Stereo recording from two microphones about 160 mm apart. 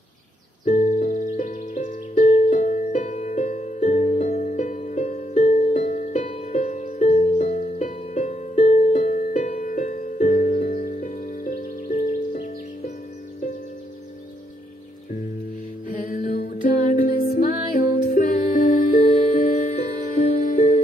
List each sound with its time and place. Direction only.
0.7 s music: 50° left (ahead or behind)
15.9 s music: 60° left (ahead or behind)